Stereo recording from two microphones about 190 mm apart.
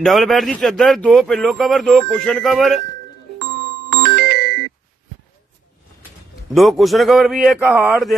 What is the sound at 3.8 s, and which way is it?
Music, 55° right (ahead or behind).